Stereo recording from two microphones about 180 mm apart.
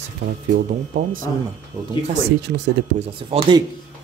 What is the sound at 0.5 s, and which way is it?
Speech, 60° right (ahead or behind).